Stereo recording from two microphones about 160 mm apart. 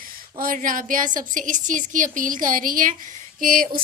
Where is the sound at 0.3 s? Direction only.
60° right (ahead or behind).